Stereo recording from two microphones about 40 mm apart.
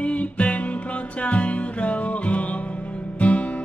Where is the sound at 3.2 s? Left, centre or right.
Left.